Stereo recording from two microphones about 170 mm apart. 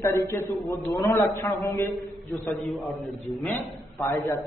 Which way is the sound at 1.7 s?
20° left (ahead or behind).